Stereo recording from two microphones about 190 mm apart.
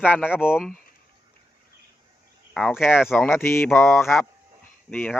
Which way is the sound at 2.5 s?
Centre (ahead or behind).